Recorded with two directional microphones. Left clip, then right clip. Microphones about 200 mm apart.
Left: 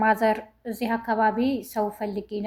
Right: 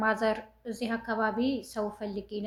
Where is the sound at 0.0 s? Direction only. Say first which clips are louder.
Left 6 dB; 30° left (ahead or behind).